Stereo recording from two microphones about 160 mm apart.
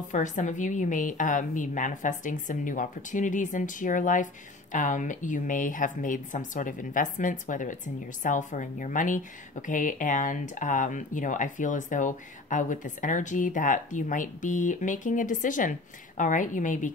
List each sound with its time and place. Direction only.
0.1 s speech: 50° left (ahead or behind)